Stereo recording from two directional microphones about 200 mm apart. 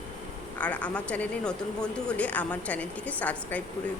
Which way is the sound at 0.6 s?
5° left (ahead or behind).